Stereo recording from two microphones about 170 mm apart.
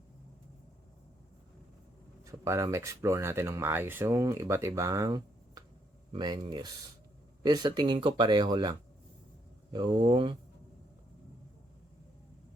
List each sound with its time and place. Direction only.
2.2 s speech: 20° right (ahead or behind)
9.7 s speech: 25° right (ahead or behind)